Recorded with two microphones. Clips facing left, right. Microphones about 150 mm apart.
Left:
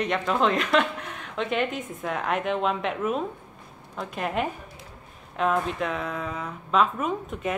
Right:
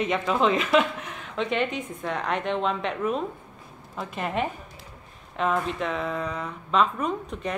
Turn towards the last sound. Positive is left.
turn(degrees=5)  # may be behind; listen again after turning